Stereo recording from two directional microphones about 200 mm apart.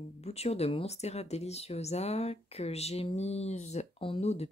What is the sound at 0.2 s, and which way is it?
Speech, 30° left (ahead or behind).